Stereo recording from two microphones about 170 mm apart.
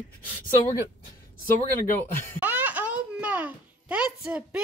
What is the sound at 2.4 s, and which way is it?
A child's voice, 10° right (ahead or behind).